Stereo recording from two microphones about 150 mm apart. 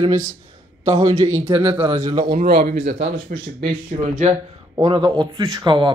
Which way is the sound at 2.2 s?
70° right (ahead or behind).